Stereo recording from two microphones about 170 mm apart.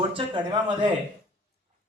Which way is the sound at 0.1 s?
30° right (ahead or behind).